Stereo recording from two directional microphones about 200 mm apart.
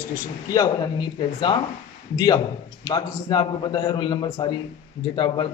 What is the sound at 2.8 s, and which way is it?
A man's voice, 20° left (ahead or behind).